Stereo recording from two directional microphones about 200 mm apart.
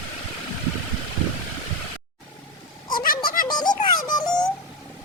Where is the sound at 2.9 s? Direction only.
45° left (ahead or behind).